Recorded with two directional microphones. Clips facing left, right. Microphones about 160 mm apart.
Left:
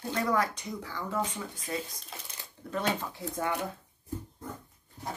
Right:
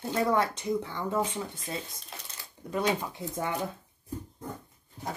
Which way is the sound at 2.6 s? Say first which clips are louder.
Right 3 dB; 20° right (ahead or behind).